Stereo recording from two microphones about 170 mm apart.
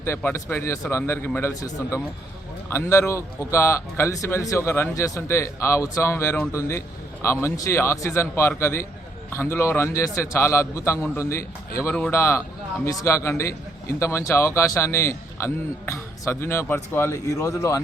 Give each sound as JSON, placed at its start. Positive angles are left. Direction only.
{"t": 0.0, "sound": "a man's voice", "side_deg": 15}